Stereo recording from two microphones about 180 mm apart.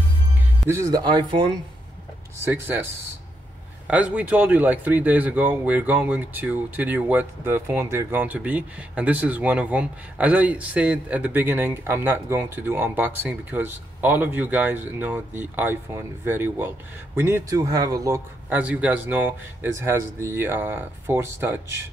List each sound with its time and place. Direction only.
0.7 s speech: 15° right (ahead or behind)
2.4 s a man's voice: 10° right (ahead or behind)